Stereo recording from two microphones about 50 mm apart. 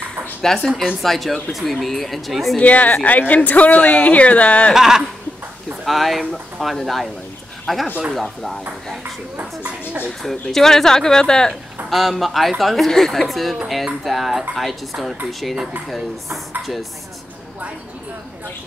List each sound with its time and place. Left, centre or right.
0.4 s a woman's voice: centre
2.6 s speech: left
4.7 s a sound: centre
5.9 s speech: centre
9.4 s speech: right
10.2 s speech: centre
11.9 s speech: centre